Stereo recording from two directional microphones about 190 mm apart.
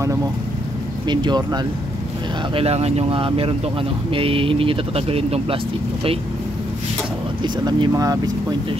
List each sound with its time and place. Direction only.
1.0 s speech: 25° right (ahead or behind)
2.5 s speech: 35° right (ahead or behind)
7.4 s speech: 25° right (ahead or behind)